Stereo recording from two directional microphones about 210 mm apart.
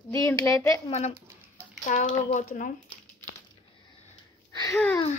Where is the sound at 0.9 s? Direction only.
30° left (ahead or behind).